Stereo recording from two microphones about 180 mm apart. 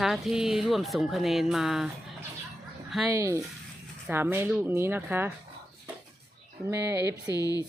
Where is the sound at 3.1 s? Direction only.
15° right (ahead or behind).